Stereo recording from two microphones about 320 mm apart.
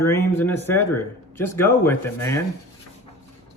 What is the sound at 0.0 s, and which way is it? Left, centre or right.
A man's voice, centre.